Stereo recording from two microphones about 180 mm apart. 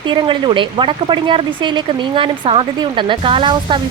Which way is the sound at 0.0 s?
25° right (ahead or behind).